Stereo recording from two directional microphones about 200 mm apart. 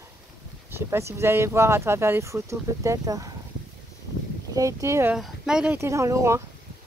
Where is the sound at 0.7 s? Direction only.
15° right (ahead or behind).